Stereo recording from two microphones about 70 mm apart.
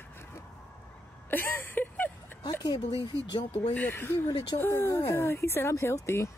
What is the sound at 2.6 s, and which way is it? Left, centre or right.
Speech, left.